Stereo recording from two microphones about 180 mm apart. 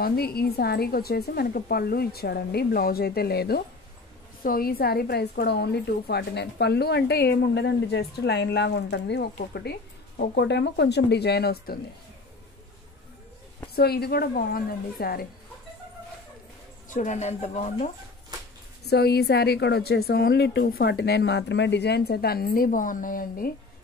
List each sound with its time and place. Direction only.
0.0 s a woman's voice: 60° left (ahead or behind)
13.7 s a woman's voice: 60° left (ahead or behind)
16.9 s speech: 40° left (ahead or behind)
18.9 s a woman's voice: 65° left (ahead or behind)